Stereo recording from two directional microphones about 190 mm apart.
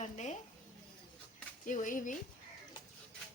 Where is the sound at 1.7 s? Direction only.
45° left (ahead or behind).